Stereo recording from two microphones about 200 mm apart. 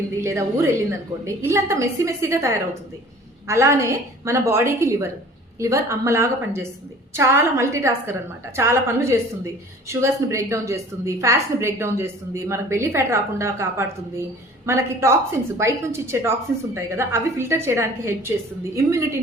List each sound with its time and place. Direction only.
0.2 s a woman's voice: 15° right (ahead or behind)